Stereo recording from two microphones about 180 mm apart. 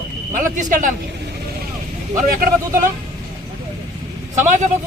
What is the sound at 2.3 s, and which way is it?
Speech, 50° right (ahead or behind).